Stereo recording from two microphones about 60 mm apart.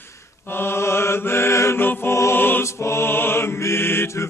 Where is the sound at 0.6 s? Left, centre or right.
Left.